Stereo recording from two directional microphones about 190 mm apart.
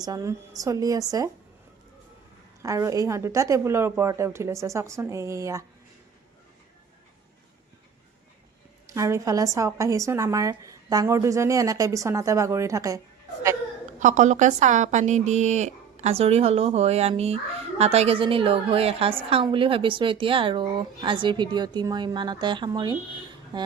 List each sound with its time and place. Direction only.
0.0 s speech: 20° right (ahead or behind)
2.6 s speech: 15° right (ahead or behind)
8.9 s speech: 15° right (ahead or behind)
14.0 s a woman's voice: 40° right (ahead or behind); by 23.0 s 20° right (ahead or behind)